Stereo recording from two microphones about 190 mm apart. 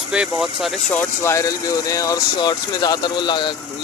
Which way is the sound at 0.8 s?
10° left (ahead or behind).